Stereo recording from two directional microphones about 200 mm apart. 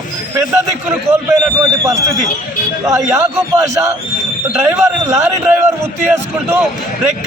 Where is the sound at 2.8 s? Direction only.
15° right (ahead or behind).